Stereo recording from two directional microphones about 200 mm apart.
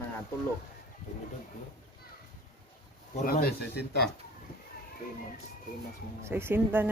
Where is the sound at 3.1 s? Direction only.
50° left (ahead or behind).